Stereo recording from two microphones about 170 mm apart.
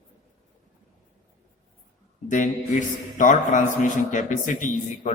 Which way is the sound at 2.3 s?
45° left (ahead or behind).